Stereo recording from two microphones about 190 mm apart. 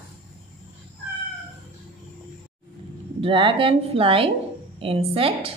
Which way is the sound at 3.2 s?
25° right (ahead or behind).